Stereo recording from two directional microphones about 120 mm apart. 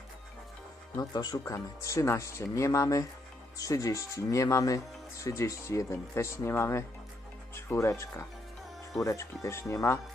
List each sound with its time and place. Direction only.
0.9 s speech: 30° left (ahead or behind)